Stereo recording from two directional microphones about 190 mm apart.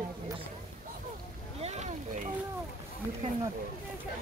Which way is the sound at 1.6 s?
35° right (ahead or behind).